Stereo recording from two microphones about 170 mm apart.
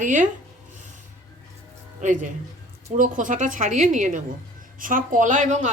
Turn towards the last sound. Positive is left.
turn(degrees=-45)  # may be behind; listen again after turning